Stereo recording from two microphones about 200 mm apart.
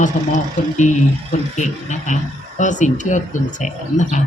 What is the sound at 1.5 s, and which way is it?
A woman's voice, 35° left (ahead or behind).